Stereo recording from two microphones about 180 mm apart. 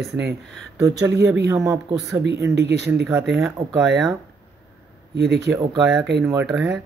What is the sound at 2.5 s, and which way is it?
Speech, 70° right (ahead or behind).